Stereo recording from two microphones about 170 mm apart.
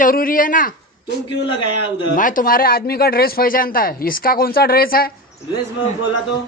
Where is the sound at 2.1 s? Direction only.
55° left (ahead or behind).